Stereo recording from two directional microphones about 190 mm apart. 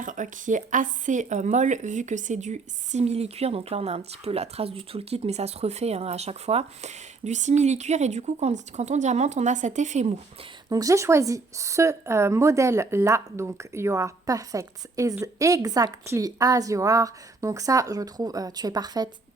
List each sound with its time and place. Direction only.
0.0 s speech: 40° right (ahead or behind)
10.7 s a woman's voice: 20° right (ahead or behind)